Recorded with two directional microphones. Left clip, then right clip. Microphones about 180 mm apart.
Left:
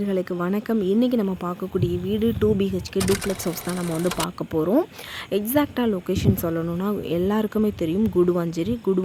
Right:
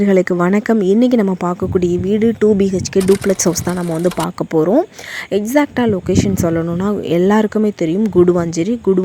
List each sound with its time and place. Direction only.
0.0 s speech: 40° right (ahead or behind)
3.0 s speech: centre (ahead or behind)
4.4 s a woman's voice: 35° right (ahead or behind)